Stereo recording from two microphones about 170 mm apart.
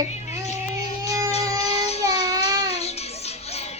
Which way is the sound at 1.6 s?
40° left (ahead or behind).